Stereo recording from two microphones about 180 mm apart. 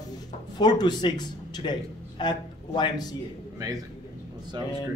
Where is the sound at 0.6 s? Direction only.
25° left (ahead or behind).